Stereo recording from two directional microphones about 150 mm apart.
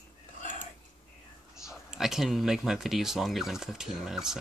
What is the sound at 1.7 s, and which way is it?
Speech, 5° right (ahead or behind).